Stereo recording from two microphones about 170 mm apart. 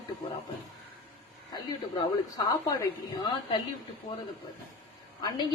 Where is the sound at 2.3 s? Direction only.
20° left (ahead or behind).